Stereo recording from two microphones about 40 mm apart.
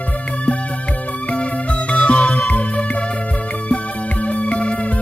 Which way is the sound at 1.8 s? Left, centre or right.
Left.